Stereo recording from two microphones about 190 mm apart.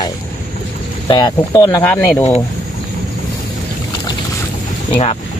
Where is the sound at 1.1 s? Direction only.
20° left (ahead or behind).